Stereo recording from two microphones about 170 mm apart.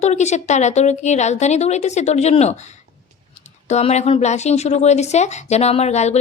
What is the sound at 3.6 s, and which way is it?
Speech, 40° left (ahead or behind).